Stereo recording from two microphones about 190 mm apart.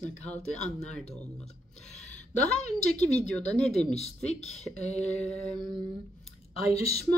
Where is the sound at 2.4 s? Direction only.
35° left (ahead or behind).